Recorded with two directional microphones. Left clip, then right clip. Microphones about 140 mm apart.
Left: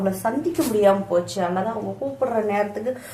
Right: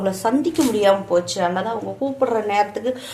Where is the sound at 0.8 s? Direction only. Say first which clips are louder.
Right 1 dB; 40° right (ahead or behind).